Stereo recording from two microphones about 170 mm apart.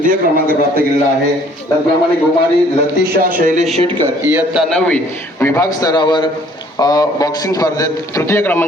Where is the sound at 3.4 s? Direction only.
50° right (ahead or behind).